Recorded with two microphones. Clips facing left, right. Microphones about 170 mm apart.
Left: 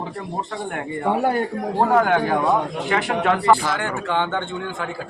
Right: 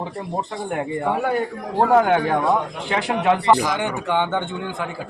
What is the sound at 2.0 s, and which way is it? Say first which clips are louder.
A man's voice: right 1 dB; 10° right (ahead or behind).